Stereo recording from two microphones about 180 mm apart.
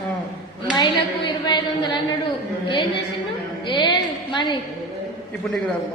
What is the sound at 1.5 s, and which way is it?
Speech, 25° left (ahead or behind).